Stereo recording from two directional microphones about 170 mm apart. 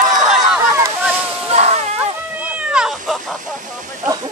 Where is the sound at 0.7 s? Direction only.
15° right (ahead or behind).